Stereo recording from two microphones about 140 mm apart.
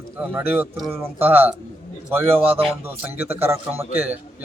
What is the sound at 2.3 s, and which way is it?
Speech, 40° right (ahead or behind).